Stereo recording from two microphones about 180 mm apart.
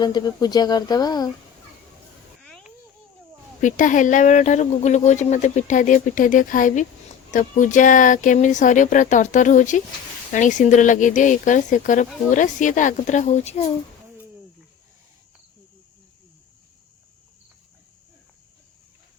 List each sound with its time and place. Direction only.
0.0 s speech: 25° left (ahead or behind)
2.4 s a sound: 5° left (ahead or behind)
3.6 s speech: 45° left (ahead or behind)